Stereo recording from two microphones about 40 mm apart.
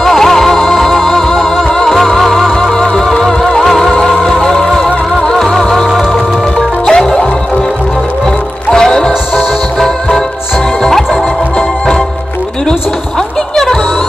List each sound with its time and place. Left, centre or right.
0.0 s music: centre
6.9 s music: centre
8.6 s music: centre
10.8 s music: centre